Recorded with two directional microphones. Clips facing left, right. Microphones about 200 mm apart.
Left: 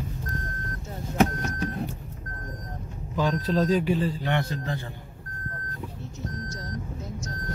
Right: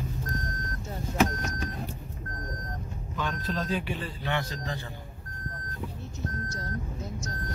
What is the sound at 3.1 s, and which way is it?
A man's voice, 35° left (ahead or behind).